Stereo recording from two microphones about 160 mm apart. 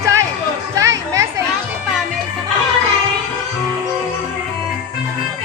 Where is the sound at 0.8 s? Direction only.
20° right (ahead or behind).